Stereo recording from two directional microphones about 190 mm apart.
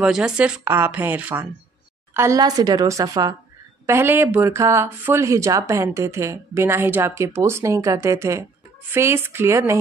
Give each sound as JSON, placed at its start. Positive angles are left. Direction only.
{"t": 0.0, "sound": "a woman's voice", "side_deg": -5}